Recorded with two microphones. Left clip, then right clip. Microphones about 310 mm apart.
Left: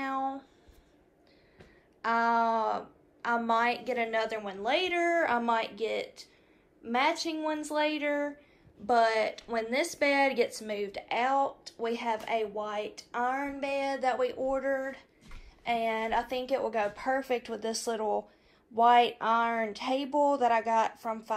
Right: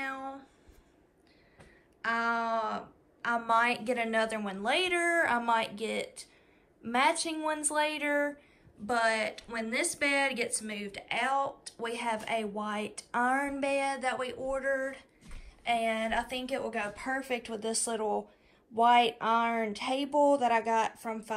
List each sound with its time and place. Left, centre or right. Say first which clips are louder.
0.0 s a sound: left 5 dB; centre
2.0 s a woman's voice: left 4 dB; centre
19.4 s a woman's voice: left 1 dB; centre